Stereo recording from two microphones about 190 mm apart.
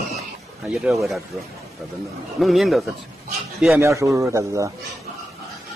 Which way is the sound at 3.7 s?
15° right (ahead or behind).